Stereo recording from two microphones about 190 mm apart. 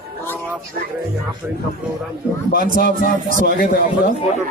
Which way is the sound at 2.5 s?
50° left (ahead or behind).